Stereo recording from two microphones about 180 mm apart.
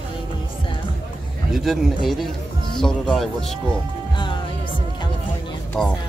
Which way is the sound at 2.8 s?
Centre (ahead or behind).